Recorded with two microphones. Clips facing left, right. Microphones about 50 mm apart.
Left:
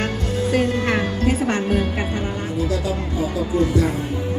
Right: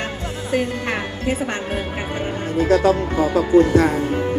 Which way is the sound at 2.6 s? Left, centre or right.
Right.